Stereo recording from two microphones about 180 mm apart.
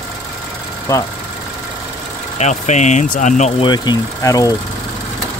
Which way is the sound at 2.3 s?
40° left (ahead or behind).